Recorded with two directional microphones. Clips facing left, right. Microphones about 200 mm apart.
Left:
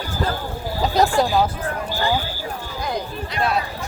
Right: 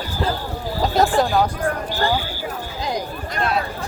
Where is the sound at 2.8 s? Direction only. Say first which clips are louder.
Right 1 dB; 20° right (ahead or behind).